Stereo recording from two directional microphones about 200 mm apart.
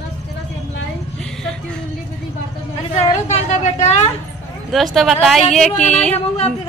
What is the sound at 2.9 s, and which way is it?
A woman's voice, 35° left (ahead or behind).